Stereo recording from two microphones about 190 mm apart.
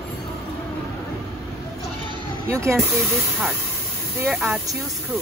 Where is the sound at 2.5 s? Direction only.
15° right (ahead or behind).